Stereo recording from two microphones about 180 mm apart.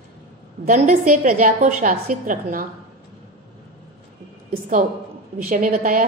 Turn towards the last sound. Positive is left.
turn(degrees=-50)  # may be behind; listen again after turning